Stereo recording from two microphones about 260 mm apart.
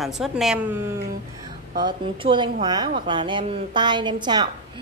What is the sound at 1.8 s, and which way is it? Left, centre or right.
A woman's voice, centre.